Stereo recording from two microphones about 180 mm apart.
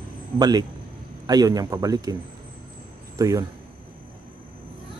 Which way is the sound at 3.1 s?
20° right (ahead or behind).